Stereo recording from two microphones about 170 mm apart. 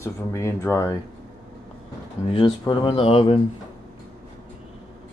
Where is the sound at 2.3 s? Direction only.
25° left (ahead or behind).